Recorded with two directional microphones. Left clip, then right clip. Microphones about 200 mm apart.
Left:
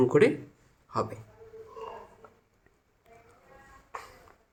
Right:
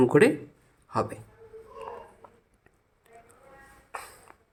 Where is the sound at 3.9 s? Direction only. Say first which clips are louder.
Right 2 dB; 20° right (ahead or behind).